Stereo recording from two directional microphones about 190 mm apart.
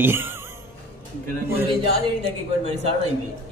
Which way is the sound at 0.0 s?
10° right (ahead or behind).